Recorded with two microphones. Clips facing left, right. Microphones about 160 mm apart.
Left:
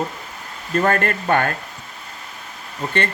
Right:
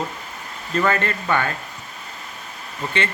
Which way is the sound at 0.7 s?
50° left (ahead or behind).